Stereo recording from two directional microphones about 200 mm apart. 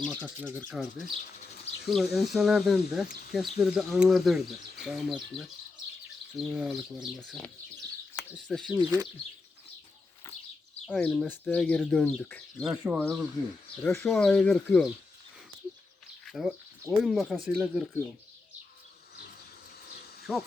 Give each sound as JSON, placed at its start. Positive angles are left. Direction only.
{"t": 0.0, "sound": "speech", "side_deg": 0}
{"t": 0.4, "sound": "speech", "side_deg": -15}
{"t": 0.7, "sound": "speech", "side_deg": 0}
{"t": 6.3, "sound": "speech", "side_deg": -5}
{"t": 8.8, "sound": "speech", "side_deg": -20}
{"t": 10.3, "sound": "a sound", "side_deg": 15}
{"t": 10.9, "sound": "speech", "side_deg": 5}
{"t": 12.6, "sound": "speech", "side_deg": -5}
{"t": 13.8, "sound": "speech", "side_deg": 10}
{"t": 16.2, "sound": "a sound", "side_deg": 0}
{"t": 17.0, "sound": "speech", "side_deg": 0}
{"t": 20.3, "sound": "speech", "side_deg": -5}